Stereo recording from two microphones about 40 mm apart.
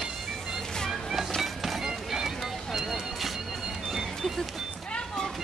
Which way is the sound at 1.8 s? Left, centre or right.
Centre.